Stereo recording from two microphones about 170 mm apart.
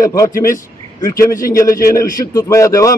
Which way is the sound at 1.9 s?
20° left (ahead or behind).